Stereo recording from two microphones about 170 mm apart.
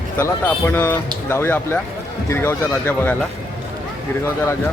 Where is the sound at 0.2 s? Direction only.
15° left (ahead or behind).